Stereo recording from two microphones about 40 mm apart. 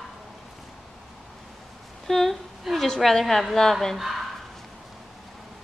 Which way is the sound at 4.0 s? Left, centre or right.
Centre.